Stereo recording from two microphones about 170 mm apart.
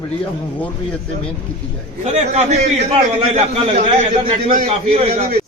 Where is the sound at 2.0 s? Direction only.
40° right (ahead or behind).